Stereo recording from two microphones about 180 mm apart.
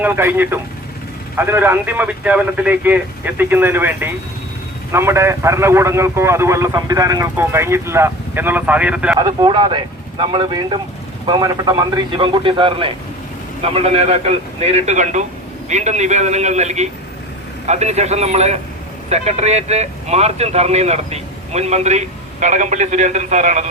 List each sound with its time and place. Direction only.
0.0 s a man's voice: 10° right (ahead or behind)
9.1 s a man's voice: 25° right (ahead or behind); by 23.6 s 40° right (ahead or behind)